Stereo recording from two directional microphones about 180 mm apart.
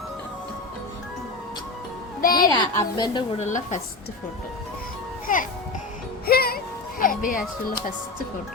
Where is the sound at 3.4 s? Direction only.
40° left (ahead or behind).